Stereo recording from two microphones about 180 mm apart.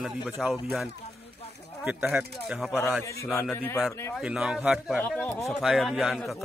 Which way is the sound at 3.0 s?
15° left (ahead or behind).